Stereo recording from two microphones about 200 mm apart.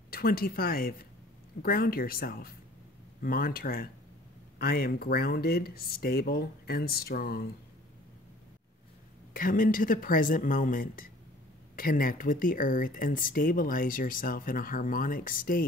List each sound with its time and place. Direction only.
0.1 s speech: 50° left (ahead or behind)
9.3 s speech: 45° left (ahead or behind)